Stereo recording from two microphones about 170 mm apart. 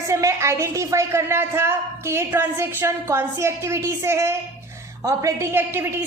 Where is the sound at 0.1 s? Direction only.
15° right (ahead or behind).